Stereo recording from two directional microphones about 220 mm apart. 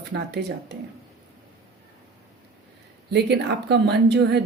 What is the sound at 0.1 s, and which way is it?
Speech, 50° right (ahead or behind).